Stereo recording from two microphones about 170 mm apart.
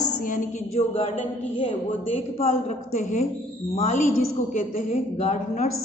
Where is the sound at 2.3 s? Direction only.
45° left (ahead or behind).